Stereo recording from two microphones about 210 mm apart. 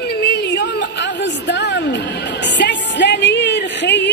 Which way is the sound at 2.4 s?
55° left (ahead or behind).